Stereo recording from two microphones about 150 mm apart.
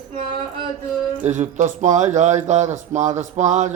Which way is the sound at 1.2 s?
50° right (ahead or behind).